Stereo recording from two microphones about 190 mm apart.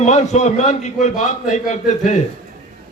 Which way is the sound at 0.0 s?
35° left (ahead or behind).